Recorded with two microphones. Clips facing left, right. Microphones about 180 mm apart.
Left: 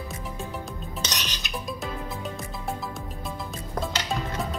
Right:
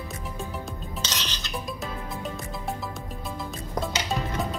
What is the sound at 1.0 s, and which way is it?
Music, 15° left (ahead or behind).